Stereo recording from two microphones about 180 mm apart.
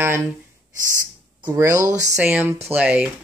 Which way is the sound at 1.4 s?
20° right (ahead or behind).